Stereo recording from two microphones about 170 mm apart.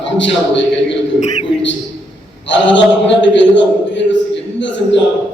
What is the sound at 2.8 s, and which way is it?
A man's voice, 90° left.